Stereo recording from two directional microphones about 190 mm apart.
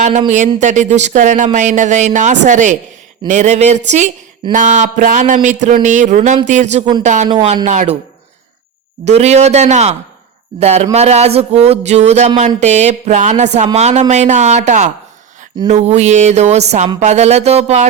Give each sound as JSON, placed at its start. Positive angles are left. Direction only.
{"t": 0.3, "sound": "speech", "side_deg": -40}
{"t": 9.0, "sound": "speech", "side_deg": -35}